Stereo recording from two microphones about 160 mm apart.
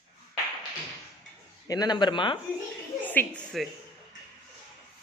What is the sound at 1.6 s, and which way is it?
Speech, 25° left (ahead or behind).